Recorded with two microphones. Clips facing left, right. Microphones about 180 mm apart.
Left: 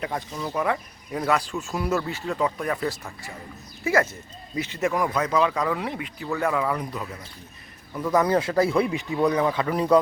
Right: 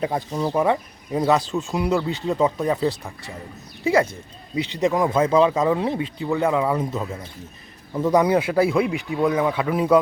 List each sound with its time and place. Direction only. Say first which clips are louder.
0.0 s speech: right 6 dB; 30° right (ahead or behind); by 10.0 s 5° right (ahead or behind)